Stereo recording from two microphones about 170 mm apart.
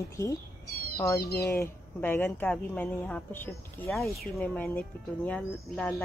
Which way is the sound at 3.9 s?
Centre (ahead or behind).